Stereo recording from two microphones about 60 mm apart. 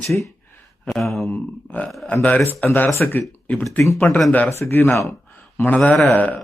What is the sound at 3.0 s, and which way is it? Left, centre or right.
Speech, left.